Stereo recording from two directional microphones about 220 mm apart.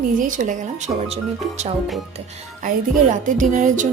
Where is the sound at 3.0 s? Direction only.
35° right (ahead or behind).